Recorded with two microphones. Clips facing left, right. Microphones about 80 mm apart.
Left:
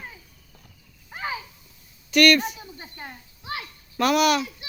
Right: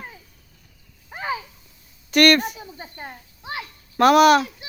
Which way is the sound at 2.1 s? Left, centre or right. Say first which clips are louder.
Right 2 dB; right.